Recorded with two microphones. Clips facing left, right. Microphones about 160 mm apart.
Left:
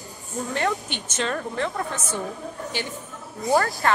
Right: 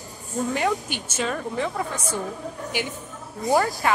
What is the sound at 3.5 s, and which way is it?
Speech, 10° right (ahead or behind).